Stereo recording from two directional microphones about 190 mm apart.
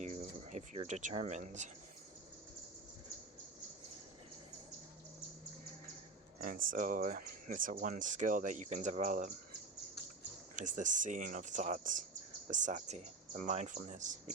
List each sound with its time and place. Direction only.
0.0 s a sound: 40° right (ahead or behind)
6.4 s speech: 45° right (ahead or behind)
10.5 s speech: 40° right (ahead or behind)